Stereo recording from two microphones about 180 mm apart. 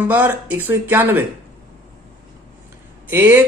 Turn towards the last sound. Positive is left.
turn(degrees=-10)  # may be behind; listen again after turning